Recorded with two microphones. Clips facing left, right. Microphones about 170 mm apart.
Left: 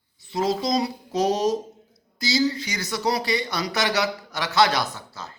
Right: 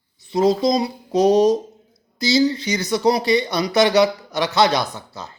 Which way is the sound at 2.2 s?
20° right (ahead or behind).